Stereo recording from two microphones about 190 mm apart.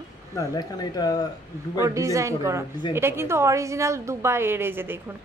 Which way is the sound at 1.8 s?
15° right (ahead or behind).